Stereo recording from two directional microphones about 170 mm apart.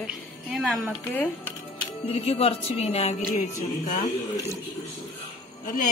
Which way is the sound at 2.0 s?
35° left (ahead or behind).